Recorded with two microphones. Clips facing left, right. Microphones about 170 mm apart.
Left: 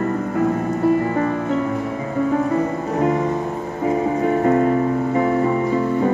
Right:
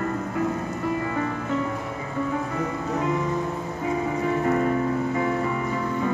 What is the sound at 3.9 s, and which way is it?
Music, 40° left (ahead or behind).